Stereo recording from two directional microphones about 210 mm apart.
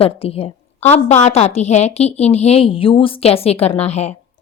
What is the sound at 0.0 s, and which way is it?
A woman's voice, 25° left (ahead or behind).